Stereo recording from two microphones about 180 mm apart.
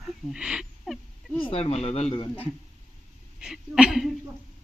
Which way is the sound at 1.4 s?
35° left (ahead or behind).